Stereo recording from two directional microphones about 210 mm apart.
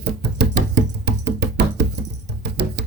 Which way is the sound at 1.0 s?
55° right (ahead or behind).